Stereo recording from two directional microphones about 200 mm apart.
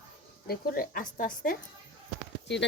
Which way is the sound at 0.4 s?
50° left (ahead or behind).